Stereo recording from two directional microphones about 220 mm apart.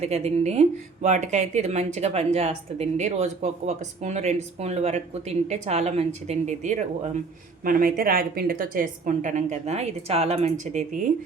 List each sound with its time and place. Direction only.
0.0 s a woman's voice: 30° right (ahead or behind)